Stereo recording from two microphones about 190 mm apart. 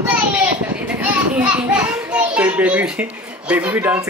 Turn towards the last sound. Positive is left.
turn(degrees=-10)  # may be behind; listen again after turning